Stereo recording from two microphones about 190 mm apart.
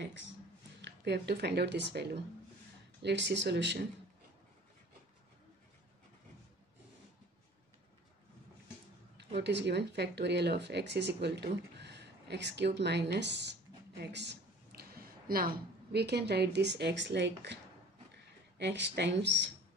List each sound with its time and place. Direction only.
0.7 s speech: 65° right (ahead or behind)
9.4 s speech: 65° right (ahead or behind)
18.6 s speech: 65° right (ahead or behind)